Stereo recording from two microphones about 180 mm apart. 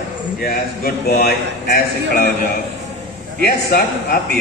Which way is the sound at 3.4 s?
60° left (ahead or behind).